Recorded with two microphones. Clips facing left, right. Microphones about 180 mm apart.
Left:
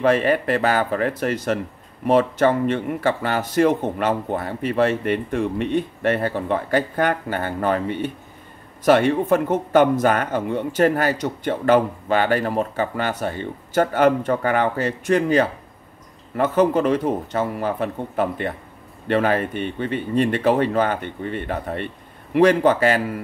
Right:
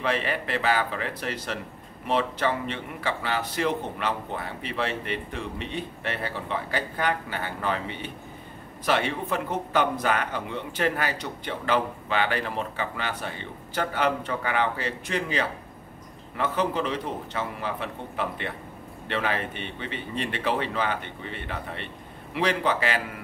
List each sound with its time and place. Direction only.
0.0 s speech: 45° left (ahead or behind)